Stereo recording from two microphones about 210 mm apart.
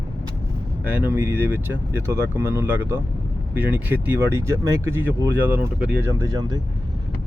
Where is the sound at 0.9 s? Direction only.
10° right (ahead or behind).